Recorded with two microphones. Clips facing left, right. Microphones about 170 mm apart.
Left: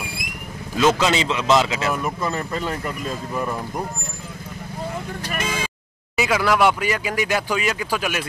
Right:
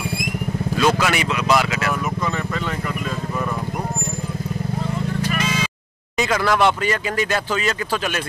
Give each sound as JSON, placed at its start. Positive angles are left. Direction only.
{"t": 0.7, "sound": "speech", "side_deg": 20}
{"t": 5.3, "sound": "vehicle", "side_deg": 50}
{"t": 6.1, "sound": "speech", "side_deg": 10}